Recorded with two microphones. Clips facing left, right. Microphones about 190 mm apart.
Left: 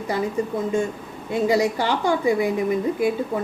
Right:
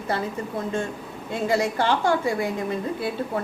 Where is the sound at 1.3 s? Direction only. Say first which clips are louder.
Left 4 dB; 15° left (ahead or behind).